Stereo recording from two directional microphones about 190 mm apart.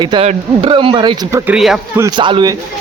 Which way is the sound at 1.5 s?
Centre (ahead or behind).